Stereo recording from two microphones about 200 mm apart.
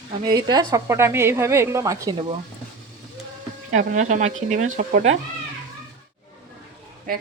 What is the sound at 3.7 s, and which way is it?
Speech, 35° right (ahead or behind).